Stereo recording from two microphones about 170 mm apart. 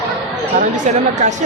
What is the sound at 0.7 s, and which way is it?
Speech, 45° right (ahead or behind).